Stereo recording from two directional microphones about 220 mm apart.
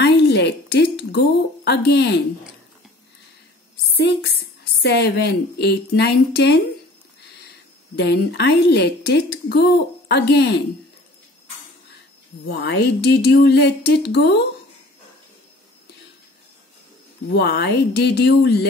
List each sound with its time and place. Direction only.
0.0 s a sound: 50° left (ahead or behind)
3.9 s speech: 45° left (ahead or behind)
8.0 s speech: 50° left (ahead or behind)
12.4 s speech: 50° left (ahead or behind)
17.3 s speech: 50° left (ahead or behind)